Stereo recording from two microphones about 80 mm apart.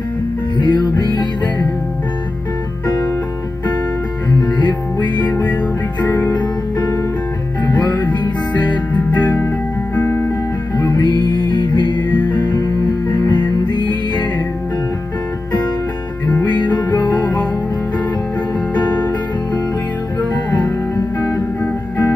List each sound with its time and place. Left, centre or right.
0.6 s music: left
4.4 s music: left
9.9 s music: left
10.8 s music: left
11.5 s music: left
12.3 s music: left
16.4 s music: left